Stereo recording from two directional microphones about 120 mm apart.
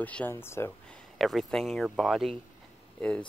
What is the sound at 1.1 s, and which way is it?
Speech, centre (ahead or behind).